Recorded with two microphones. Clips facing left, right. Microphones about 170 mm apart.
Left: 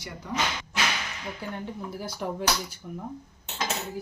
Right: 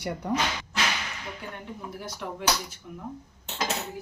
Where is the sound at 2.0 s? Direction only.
35° left (ahead or behind).